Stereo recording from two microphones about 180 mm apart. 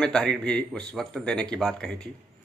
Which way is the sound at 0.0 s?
5° left (ahead or behind).